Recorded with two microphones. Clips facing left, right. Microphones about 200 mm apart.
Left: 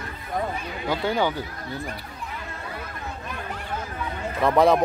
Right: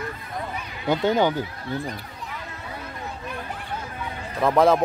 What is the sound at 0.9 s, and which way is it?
Speech, 20° right (ahead or behind).